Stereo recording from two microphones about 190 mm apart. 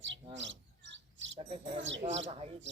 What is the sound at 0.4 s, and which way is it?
Bird, 75° right (ahead or behind).